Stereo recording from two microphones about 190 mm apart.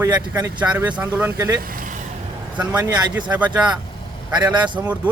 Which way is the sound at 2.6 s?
15° right (ahead or behind).